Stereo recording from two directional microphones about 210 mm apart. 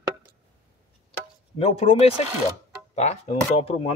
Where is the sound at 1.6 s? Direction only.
30° left (ahead or behind).